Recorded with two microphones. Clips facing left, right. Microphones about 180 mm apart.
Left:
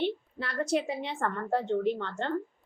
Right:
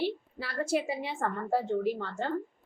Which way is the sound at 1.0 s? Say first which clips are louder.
Left 1 dB; 5° right (ahead or behind).